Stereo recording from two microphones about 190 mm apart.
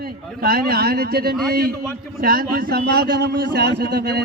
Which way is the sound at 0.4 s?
55° right (ahead or behind).